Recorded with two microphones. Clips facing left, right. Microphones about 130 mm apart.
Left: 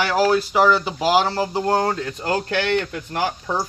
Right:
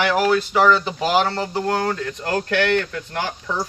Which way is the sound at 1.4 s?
20° left (ahead or behind).